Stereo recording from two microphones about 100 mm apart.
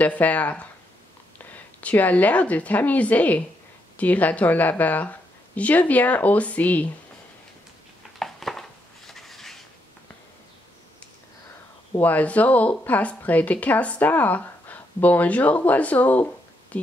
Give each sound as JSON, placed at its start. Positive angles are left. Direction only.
{"t": 0.0, "sound": "a woman's voice", "side_deg": 15}
{"t": 8.2, "sound": "chopping", "side_deg": 5}
{"t": 12.0, "sound": "a woman's voice", "side_deg": 15}
{"t": 16.7, "sound": "a sound", "side_deg": 15}